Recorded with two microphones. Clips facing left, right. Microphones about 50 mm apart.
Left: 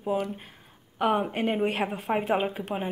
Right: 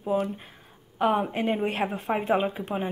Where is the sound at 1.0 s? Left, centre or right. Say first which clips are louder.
Right 1 dB; centre.